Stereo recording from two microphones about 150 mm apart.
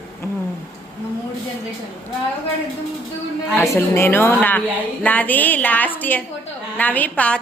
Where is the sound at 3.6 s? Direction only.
15° left (ahead or behind).